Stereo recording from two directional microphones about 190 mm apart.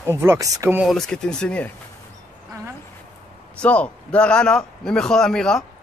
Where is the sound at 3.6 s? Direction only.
5° left (ahead or behind).